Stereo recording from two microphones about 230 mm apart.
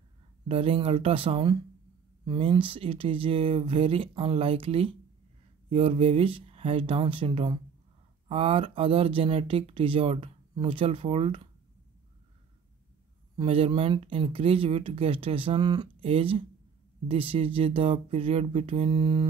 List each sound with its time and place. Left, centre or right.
0.5 s speech: right
13.4 s speech: right